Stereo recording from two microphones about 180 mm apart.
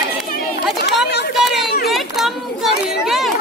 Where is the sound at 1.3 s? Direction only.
Centre (ahead or behind).